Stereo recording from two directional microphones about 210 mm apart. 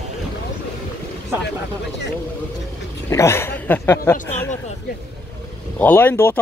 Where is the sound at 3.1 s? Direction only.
15° left (ahead or behind).